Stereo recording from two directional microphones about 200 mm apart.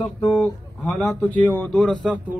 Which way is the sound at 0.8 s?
Centre (ahead or behind).